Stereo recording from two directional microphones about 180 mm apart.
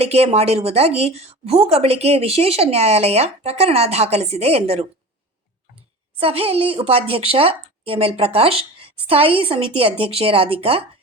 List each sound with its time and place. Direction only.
0.0 s a woman's voice: 35° right (ahead or behind)
6.1 s a woman's voice: 30° right (ahead or behind)